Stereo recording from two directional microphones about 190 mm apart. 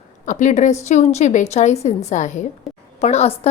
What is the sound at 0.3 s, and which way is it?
A woman's voice, 40° left (ahead or behind).